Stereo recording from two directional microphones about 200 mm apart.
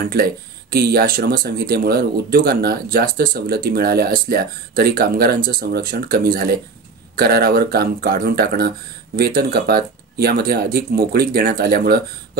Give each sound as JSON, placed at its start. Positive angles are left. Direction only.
{"t": 0.0, "sound": "speech", "side_deg": -50}